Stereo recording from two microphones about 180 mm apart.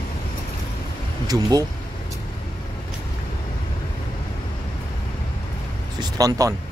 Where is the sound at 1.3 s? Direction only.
20° right (ahead or behind).